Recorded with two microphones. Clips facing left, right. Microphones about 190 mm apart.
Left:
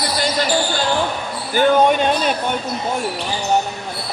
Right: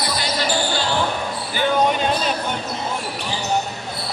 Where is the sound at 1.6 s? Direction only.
50° left (ahead or behind).